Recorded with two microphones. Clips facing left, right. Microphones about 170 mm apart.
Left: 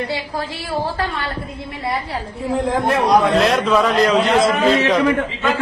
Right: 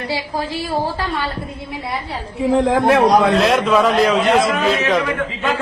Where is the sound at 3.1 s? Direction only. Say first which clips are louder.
Right 1 dB; centre (ahead or behind).